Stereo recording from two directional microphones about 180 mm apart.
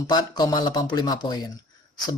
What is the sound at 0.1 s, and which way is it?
Speech, 20° left (ahead or behind).